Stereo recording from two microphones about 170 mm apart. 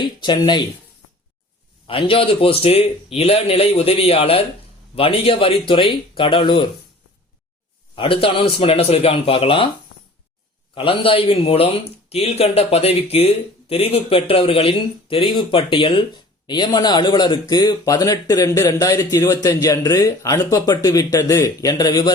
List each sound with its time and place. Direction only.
0.0 s speech: 25° left (ahead or behind)
1.9 s speech: 30° left (ahead or behind)
7.9 s speech: 30° left (ahead or behind)
10.8 s speech: 30° left (ahead or behind)